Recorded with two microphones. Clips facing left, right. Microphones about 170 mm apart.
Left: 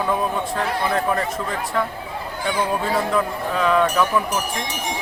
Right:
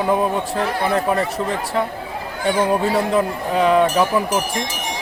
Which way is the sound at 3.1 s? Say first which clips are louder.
Right 3 dB; 30° right (ahead or behind).